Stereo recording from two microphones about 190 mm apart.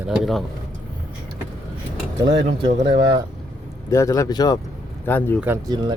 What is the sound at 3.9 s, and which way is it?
A man's voice, 15° left (ahead or behind).